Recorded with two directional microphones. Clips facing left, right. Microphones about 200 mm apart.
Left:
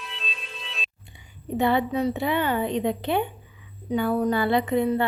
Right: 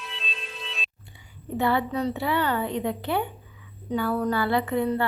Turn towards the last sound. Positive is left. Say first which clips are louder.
# left 2 dB
turn(degrees=20)  # may be behind; listen again after turning